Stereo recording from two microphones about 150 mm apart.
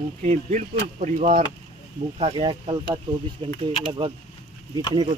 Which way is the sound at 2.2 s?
35° right (ahead or behind).